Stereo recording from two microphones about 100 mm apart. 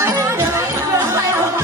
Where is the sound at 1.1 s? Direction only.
25° right (ahead or behind).